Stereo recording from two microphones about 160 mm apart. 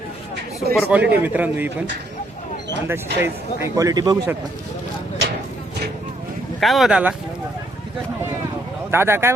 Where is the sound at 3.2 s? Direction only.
20° right (ahead or behind).